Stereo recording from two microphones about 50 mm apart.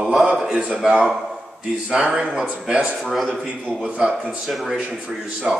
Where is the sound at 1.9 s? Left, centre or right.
Centre.